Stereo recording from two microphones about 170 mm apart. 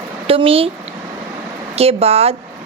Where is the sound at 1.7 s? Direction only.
35° right (ahead or behind).